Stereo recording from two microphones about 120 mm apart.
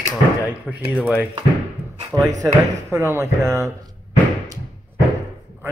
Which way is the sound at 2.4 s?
25° right (ahead or behind).